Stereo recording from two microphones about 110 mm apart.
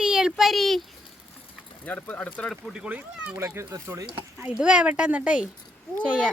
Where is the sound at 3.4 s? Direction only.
25° right (ahead or behind).